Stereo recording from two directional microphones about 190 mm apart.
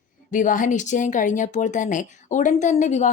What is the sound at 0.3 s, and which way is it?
Speech, 45° left (ahead or behind).